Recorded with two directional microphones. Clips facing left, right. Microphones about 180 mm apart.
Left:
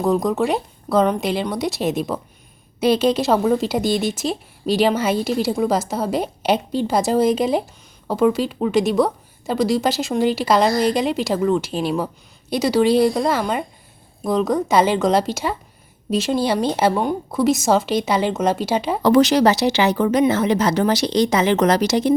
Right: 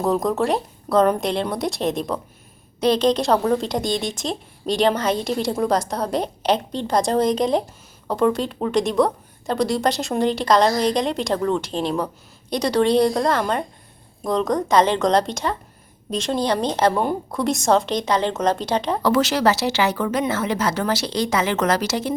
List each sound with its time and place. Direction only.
0.0 s speech: centre (ahead or behind); by 22.1 s 15° left (ahead or behind)